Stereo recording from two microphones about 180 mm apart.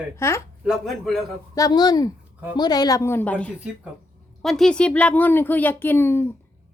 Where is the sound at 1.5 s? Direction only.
20° left (ahead or behind).